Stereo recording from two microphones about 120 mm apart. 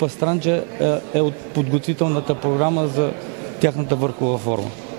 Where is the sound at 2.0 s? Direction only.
20° right (ahead or behind).